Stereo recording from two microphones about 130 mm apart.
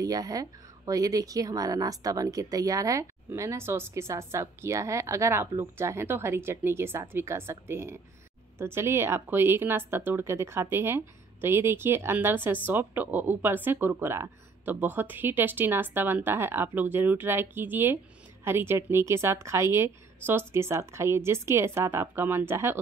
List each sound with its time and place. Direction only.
0.0 s speech: 25° right (ahead or behind)